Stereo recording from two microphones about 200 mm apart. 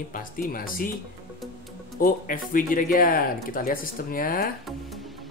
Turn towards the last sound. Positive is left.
turn(degrees=45)  # may be behind; listen again after turning